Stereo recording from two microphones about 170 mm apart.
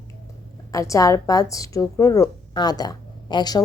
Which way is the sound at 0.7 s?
20° left (ahead or behind).